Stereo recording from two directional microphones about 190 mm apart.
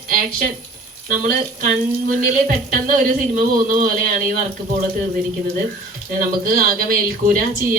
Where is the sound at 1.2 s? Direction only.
45° right (ahead or behind).